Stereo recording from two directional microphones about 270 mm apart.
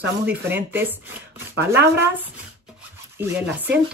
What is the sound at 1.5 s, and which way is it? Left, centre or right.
Speech, right.